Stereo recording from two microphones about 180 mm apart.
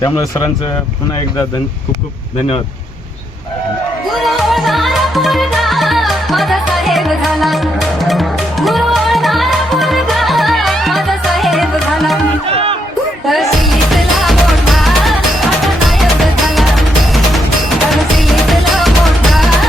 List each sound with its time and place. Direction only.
0.0 s speech: 20° left (ahead or behind)
4.1 s music: centre (ahead or behind)
12.5 s music: 30° right (ahead or behind)
13.2 s music: centre (ahead or behind)